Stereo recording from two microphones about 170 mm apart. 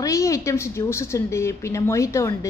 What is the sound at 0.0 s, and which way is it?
A woman's voice, 20° left (ahead or behind).